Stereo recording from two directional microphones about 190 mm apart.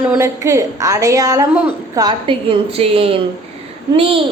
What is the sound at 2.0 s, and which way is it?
A woman's voice, 25° right (ahead or behind).